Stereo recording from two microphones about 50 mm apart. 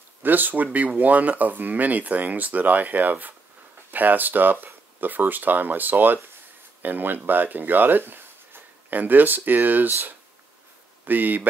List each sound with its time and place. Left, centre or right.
0.2 s speech: right